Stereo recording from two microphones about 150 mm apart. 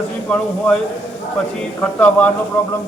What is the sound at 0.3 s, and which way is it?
Speech, 10° left (ahead or behind).